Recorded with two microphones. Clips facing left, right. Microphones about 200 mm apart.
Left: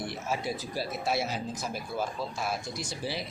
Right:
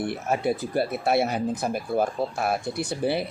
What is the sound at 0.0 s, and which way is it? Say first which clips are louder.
Speech: right 8 dB; 55° right (ahead or behind).